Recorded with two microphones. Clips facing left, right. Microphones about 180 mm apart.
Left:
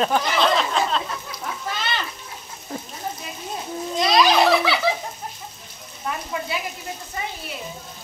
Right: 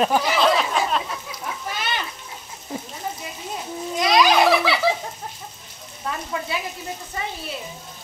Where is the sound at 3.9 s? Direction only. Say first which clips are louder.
Even; 15° right (ahead or behind).